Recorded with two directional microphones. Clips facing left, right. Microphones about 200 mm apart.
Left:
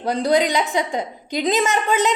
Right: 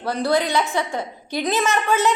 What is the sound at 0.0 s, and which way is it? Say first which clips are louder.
A woman's voice: left 2 dB; 15° left (ahead or behind).